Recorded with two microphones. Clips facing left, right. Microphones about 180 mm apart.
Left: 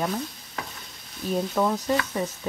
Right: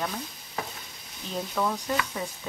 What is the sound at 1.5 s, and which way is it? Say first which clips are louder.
Speech: left 3 dB; 15° left (ahead or behind).